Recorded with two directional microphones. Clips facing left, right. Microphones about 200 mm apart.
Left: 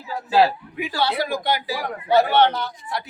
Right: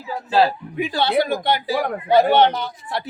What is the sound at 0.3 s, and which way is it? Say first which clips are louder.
Speech: even; 15° left (ahead or behind).